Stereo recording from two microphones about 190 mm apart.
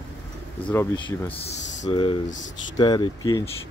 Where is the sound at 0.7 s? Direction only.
15° left (ahead or behind).